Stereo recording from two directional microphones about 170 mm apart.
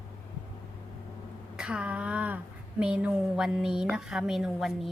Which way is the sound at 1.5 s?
5° right (ahead or behind).